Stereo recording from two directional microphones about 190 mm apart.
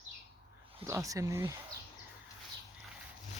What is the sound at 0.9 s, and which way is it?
Speech, 15° right (ahead or behind).